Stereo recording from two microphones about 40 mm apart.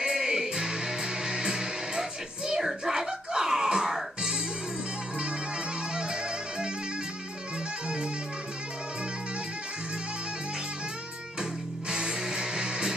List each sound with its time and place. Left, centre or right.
0.0 s music: centre
11.9 s music: centre